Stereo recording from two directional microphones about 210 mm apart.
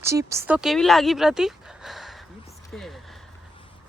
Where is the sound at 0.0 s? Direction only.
15° right (ahead or behind).